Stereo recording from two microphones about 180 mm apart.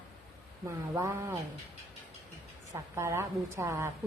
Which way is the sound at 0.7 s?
15° right (ahead or behind).